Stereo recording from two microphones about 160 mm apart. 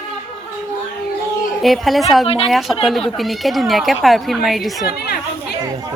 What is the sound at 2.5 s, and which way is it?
A woman's voice, centre (ahead or behind).